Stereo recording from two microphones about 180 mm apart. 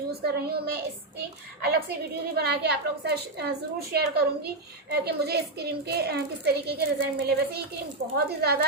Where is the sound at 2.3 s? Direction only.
65° right (ahead or behind).